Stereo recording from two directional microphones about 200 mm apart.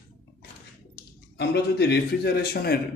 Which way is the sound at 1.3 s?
55° left (ahead or behind).